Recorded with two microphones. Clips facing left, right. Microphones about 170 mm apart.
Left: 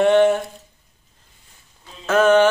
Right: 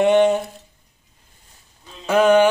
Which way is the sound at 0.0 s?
15° right (ahead or behind).